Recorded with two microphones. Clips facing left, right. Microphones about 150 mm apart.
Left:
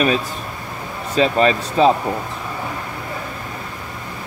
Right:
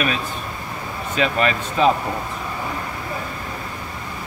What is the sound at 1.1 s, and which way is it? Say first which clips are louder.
Speech: left 5 dB; 35° left (ahead or behind).